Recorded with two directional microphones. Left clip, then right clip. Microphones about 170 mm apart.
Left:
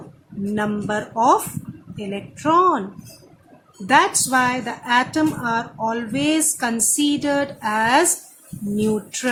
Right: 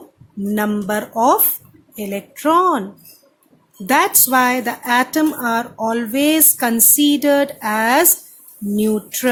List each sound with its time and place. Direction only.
0.5 s a woman's voice: 35° right (ahead or behind)
3.8 s a woman's voice: 40° right (ahead or behind)